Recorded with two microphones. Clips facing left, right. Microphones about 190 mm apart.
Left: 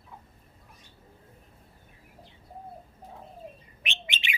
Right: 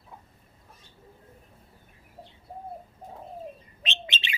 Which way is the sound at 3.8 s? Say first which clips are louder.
Right 2 dB; 15° left (ahead or behind).